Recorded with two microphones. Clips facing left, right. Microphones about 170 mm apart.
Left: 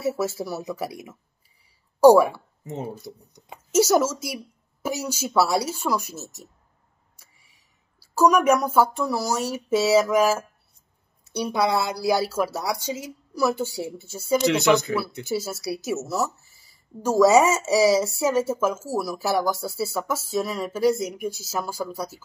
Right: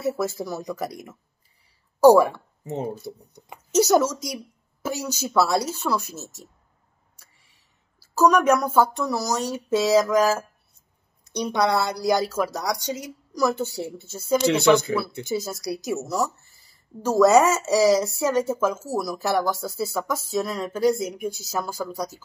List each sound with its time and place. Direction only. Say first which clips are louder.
0.0 s a woman's voice: even; 5° left (ahead or behind)
2.1 s a woman's voice: even; 10° left (ahead or behind)
2.6 s speech: right 3 dB; 30° right (ahead or behind)
3.7 s a woman's voice: right 1 dB; 5° left (ahead or behind)
6.1 s speech: even; 10° right (ahead or behind)
8.0 s a woman's voice: even; 10° left (ahead or behind)
14.5 s speech: right 4 dB; 30° right (ahead or behind)
15.2 s a woman's voice: even; 5° left (ahead or behind)